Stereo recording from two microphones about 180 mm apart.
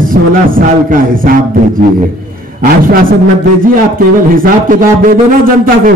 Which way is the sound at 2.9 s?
50° right (ahead or behind).